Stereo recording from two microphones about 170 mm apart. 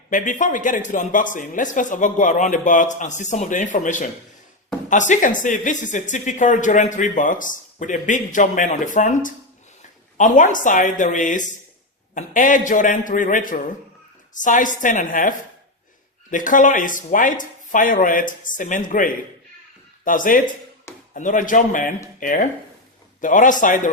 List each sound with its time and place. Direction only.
0.1 s speech: 50° left (ahead or behind)